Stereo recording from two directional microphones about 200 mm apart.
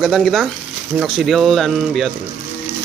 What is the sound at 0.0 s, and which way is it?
Speech, centre (ahead or behind).